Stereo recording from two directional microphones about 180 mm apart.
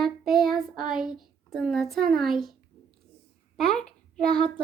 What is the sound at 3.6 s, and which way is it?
Speech, 5° left (ahead or behind).